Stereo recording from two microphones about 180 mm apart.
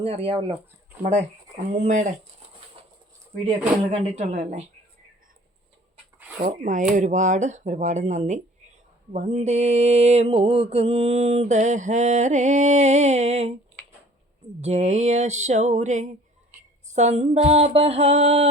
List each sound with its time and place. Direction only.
0.0 s mantra: 30° right (ahead or behind)
1.7 s mantra: 40° right (ahead or behind)
4.0 s mantra: 35° right (ahead or behind)
6.4 s mantra: 45° right (ahead or behind)
14.6 s mantra: 40° right (ahead or behind)